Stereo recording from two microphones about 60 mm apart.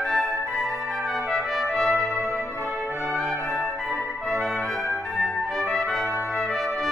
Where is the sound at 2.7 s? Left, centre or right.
Right.